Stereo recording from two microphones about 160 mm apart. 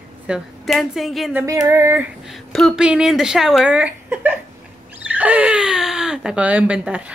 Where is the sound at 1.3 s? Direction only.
20° right (ahead or behind).